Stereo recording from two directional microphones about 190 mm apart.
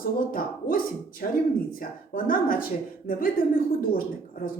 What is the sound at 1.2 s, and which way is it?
Speech, 50° left (ahead or behind).